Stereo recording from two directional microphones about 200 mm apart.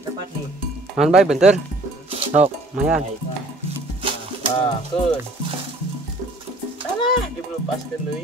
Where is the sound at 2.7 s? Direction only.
5° right (ahead or behind).